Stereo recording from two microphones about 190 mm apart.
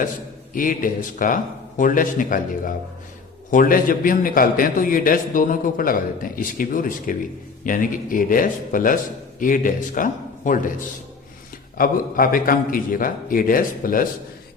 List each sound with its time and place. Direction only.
0.5 s a man's voice: 45° left (ahead or behind)
11.8 s a man's voice: 50° left (ahead or behind)